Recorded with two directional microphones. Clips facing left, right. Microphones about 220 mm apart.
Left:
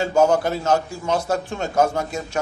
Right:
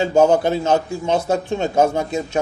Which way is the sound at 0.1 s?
25° right (ahead or behind).